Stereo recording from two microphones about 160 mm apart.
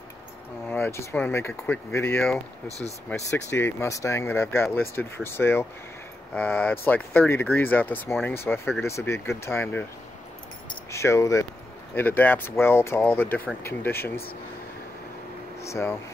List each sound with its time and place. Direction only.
0.7 s speech: 15° left (ahead or behind)
3.4 s speech: 15° left (ahead or behind)
10.9 s speech: 20° left (ahead or behind)
15.6 s speech: 15° left (ahead or behind)